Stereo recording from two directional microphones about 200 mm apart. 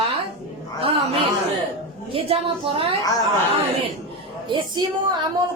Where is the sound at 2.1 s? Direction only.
25° right (ahead or behind).